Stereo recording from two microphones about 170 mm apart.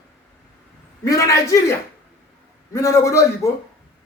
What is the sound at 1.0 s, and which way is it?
Speech, 20° left (ahead or behind).